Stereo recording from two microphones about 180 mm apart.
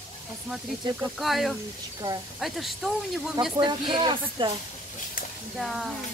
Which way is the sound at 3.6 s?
25° right (ahead or behind).